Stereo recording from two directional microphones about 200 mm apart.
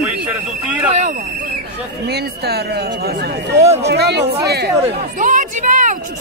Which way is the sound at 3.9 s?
55° right (ahead or behind).